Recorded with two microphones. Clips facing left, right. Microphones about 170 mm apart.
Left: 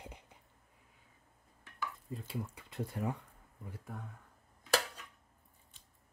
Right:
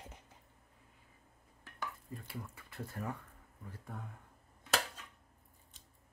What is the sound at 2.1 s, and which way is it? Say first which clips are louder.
Speech: left 5 dB; 20° left (ahead or behind).